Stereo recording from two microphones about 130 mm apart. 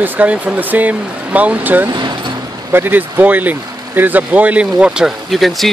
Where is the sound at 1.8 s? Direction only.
35° right (ahead or behind).